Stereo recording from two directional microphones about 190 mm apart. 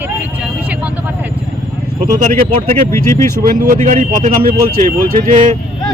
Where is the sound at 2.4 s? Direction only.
30° right (ahead or behind).